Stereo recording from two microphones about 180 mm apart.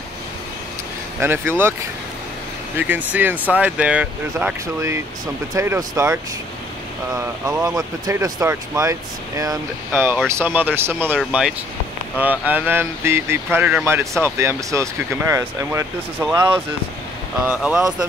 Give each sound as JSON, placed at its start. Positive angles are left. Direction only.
{"t": 1.2, "sound": "speech", "side_deg": -10}
{"t": 2.8, "sound": "speech", "side_deg": -10}
{"t": 7.2, "sound": "speech", "side_deg": -15}